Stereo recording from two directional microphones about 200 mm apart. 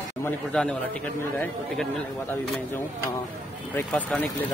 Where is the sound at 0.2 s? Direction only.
5° left (ahead or behind).